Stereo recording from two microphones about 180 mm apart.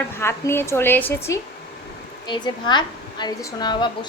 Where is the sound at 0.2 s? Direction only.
15° left (ahead or behind).